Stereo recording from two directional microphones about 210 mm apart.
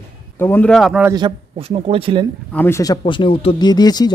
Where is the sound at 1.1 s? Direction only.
25° right (ahead or behind).